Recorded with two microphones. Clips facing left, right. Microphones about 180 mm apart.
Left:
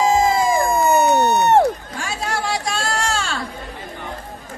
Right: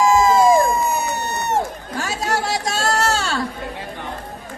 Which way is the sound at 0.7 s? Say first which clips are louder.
Left 6 dB; 60° left (ahead or behind).